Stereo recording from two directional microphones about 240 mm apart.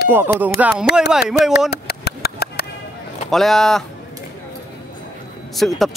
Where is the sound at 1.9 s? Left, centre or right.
Left.